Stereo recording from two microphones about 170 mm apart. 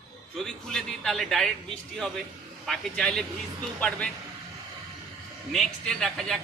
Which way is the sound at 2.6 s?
5° left (ahead or behind).